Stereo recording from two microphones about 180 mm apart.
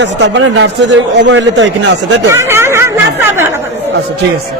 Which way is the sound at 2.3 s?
15° right (ahead or behind).